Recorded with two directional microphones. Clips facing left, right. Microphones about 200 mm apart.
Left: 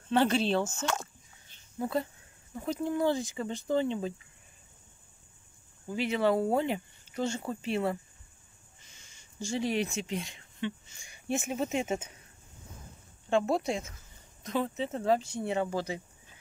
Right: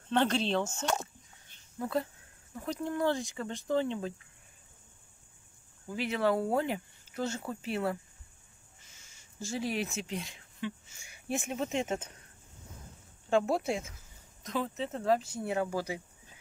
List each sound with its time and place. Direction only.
0.1 s speech: 5° left (ahead or behind)
0.7 s speech: 25° right (ahead or behind)
1.8 s speech: centre (ahead or behind)
5.9 s speech: centre (ahead or behind)
13.3 s speech: 5° right (ahead or behind)